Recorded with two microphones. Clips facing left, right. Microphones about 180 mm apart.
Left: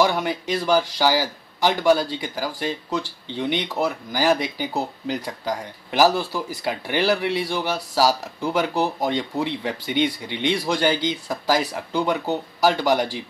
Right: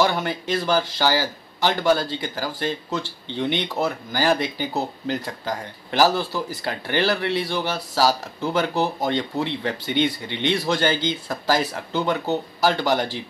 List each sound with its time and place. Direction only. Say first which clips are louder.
0.0 s speech: left 1 dB; 5° left (ahead or behind)